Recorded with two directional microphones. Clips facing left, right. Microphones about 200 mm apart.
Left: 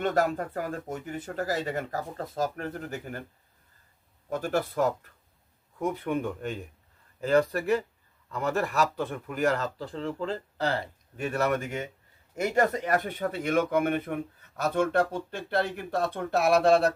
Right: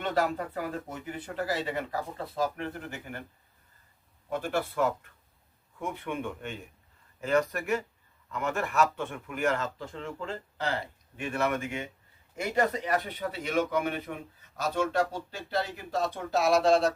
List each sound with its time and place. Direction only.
0.0 s speech: 45° left (ahead or behind)
4.3 s speech: 40° left (ahead or behind); by 16.9 s 60° left (ahead or behind)